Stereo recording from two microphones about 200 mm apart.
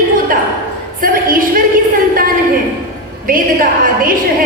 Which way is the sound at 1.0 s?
45° right (ahead or behind).